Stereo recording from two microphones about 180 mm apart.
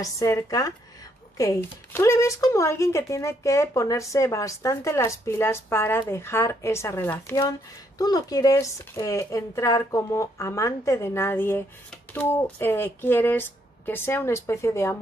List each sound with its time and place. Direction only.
0.0 s speech: 20° left (ahead or behind)